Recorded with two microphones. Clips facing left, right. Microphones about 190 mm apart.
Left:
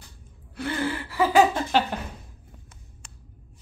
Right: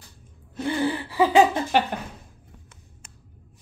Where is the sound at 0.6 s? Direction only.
15° right (ahead or behind).